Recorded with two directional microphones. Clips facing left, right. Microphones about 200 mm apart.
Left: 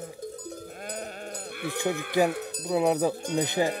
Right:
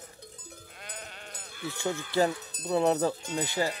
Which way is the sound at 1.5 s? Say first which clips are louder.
Left 3 dB; 60° left (ahead or behind).